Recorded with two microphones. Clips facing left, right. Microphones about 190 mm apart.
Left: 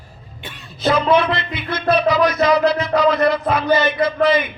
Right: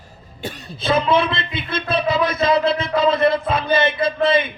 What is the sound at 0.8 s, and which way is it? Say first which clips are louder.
A man's voice: left 2 dB; 25° right (ahead or behind).